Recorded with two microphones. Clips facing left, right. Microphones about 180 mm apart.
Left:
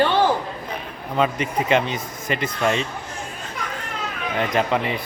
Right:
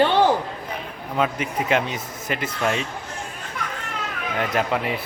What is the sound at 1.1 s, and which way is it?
Speech, 5° right (ahead or behind).